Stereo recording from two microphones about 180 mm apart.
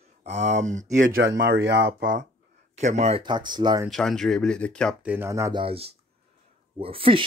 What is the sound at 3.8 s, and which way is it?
Speech, 5° left (ahead or behind).